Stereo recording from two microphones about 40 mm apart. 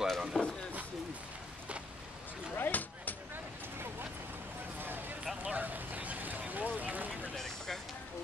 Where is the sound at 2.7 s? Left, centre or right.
Left.